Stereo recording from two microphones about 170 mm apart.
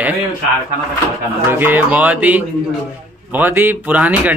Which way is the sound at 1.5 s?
10° right (ahead or behind).